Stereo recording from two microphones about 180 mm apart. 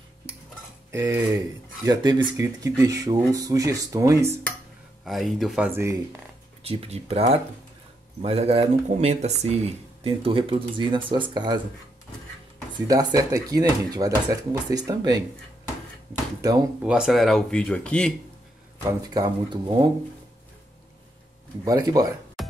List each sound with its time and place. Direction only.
0.9 s speech: 15° right (ahead or behind)
5.0 s speech: centre (ahead or behind)
5.7 s speech: 15° right (ahead or behind)
6.6 s speech: 35° right (ahead or behind)
12.8 s speech: 20° right (ahead or behind)
16.8 s speech: 5° right (ahead or behind)
19.1 s speech: 25° right (ahead or behind)
21.6 s speech: 20° right (ahead or behind)
22.4 s music: centre (ahead or behind)